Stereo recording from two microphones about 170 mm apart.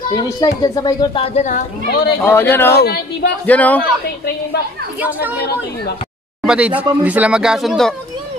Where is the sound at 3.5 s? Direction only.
10° left (ahead or behind).